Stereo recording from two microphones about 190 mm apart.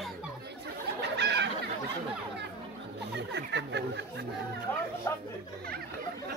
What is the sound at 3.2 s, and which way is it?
Speech, 65° right (ahead or behind).